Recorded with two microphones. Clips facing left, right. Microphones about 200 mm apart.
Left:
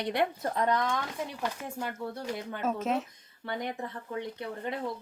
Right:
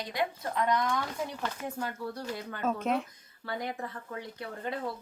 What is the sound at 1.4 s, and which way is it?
Speech, 20° left (ahead or behind).